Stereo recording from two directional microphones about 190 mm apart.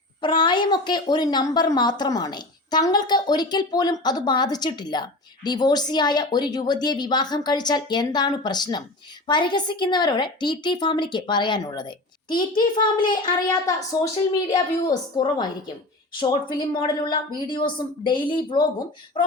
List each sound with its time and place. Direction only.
0.2 s speech: 25° left (ahead or behind)